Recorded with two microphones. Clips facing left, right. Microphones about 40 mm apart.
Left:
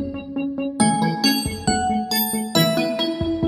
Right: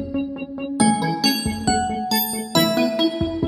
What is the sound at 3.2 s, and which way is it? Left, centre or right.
Music, left.